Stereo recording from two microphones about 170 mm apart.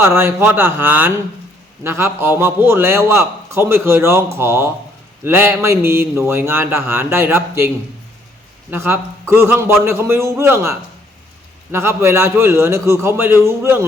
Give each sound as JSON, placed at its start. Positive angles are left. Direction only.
{"t": 0.2, "sound": "a man's voice", "side_deg": -15}
{"t": 8.7, "sound": "a man's voice", "side_deg": -15}